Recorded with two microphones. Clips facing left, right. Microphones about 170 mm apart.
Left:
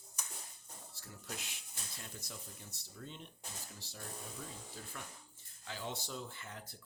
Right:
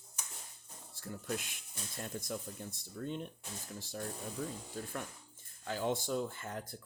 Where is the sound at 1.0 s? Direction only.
50° right (ahead or behind).